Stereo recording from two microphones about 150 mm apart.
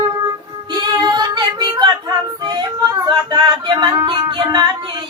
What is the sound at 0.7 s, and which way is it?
Child singing, 30° right (ahead or behind).